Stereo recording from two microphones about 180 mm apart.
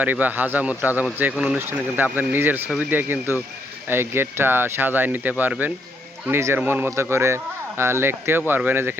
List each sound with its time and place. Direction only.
0.0 s speech: 10° right (ahead or behind)